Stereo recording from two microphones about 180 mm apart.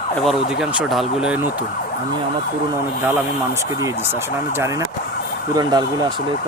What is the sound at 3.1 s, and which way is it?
Speech, 15° right (ahead or behind).